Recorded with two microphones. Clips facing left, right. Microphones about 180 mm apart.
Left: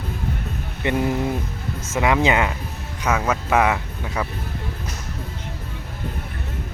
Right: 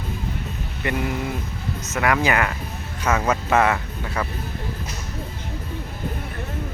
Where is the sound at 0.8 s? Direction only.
25° left (ahead or behind).